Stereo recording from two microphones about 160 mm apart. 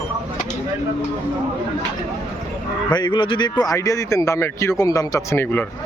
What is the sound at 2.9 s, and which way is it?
A man's voice, 30° left (ahead or behind).